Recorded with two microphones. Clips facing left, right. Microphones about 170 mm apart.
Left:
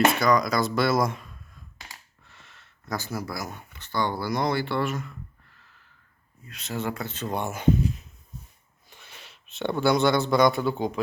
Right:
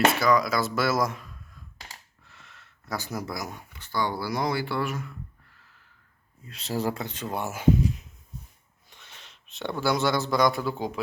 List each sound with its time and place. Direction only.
0.1 s speech: 5° right (ahead or behind)
6.4 s speech: 30° right (ahead or behind)
7.0 s speech: 15° right (ahead or behind)
8.9 s a sound: 10° left (ahead or behind)
9.8 s speech: centre (ahead or behind)